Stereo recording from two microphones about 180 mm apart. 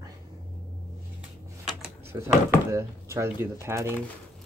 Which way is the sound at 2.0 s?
15° right (ahead or behind).